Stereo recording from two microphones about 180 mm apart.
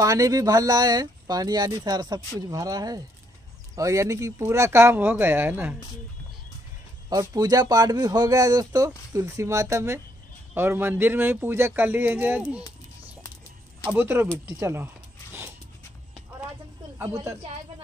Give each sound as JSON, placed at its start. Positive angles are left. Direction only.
{"t": 0.0, "sound": "speech", "side_deg": -20}
{"t": 7.1, "sound": "speech", "side_deg": -20}
{"t": 13.8, "sound": "speech", "side_deg": -15}